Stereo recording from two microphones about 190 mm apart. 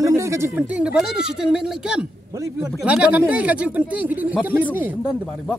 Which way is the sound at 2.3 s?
15° right (ahead or behind).